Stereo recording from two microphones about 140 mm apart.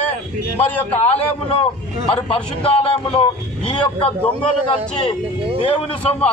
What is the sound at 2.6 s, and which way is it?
A man's voice, 45° left (ahead or behind).